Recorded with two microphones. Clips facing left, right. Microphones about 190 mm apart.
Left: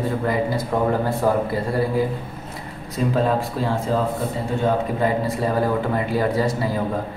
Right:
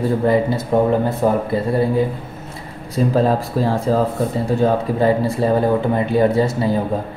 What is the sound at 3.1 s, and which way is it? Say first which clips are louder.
Speech: right 4 dB; 35° right (ahead or behind).